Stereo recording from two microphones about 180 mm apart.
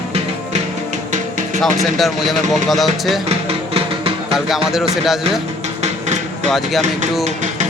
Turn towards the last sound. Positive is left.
turn(degrees=-40)  # may be behind; listen again after turning